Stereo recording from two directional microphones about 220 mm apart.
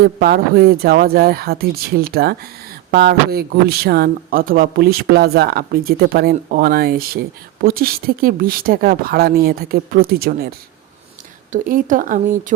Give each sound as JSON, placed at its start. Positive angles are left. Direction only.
{"t": 0.0, "sound": "speech", "side_deg": -45}
{"t": 11.5, "sound": "speech", "side_deg": -35}